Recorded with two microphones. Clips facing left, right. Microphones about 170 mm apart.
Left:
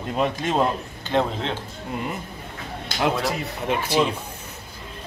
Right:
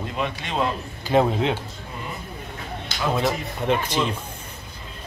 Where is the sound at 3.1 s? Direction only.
5° left (ahead or behind).